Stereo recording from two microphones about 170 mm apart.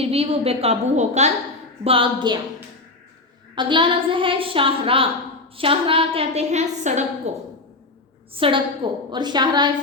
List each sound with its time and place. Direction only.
0.0 s a woman's voice: 35° right (ahead or behind)
3.5 s a woman's voice: 30° right (ahead or behind)